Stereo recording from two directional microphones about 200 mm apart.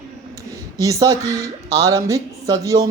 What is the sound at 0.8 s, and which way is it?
Speech, 15° right (ahead or behind).